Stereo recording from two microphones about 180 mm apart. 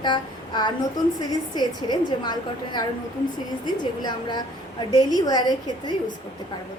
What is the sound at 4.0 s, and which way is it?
A woman's voice, 25° left (ahead or behind).